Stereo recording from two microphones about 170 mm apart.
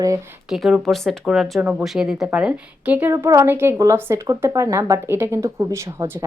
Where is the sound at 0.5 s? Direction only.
Centre (ahead or behind).